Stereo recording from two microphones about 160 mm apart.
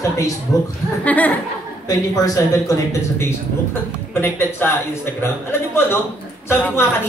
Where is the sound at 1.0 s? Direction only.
10° left (ahead or behind).